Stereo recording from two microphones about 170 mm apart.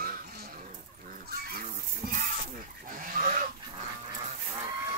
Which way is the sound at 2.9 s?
50° right (ahead or behind).